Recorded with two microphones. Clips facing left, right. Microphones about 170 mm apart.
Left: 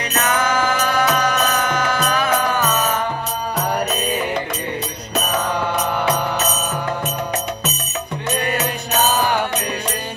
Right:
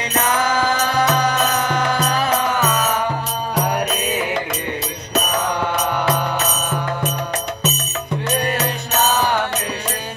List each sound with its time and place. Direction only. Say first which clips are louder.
0.3 s music: even; 35° right (ahead or behind)